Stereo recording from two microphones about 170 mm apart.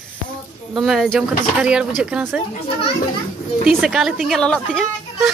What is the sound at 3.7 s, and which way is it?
Speech, centre (ahead or behind).